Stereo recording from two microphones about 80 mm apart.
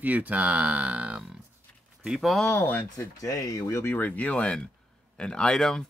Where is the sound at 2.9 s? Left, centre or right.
Left.